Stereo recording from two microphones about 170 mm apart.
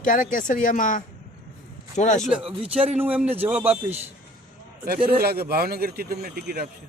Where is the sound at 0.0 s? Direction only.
50° left (ahead or behind).